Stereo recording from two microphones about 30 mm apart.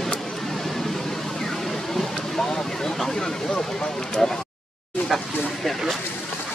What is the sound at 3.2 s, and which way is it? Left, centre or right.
Speech, left.